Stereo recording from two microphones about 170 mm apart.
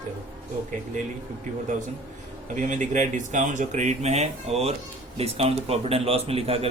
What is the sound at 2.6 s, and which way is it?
A man's voice, 45° right (ahead or behind).